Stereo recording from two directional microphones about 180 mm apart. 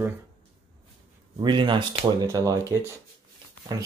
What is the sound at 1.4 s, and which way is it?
Speech, 25° right (ahead or behind).